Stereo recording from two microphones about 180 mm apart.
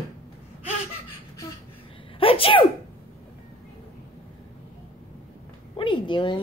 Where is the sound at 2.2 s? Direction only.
30° left (ahead or behind).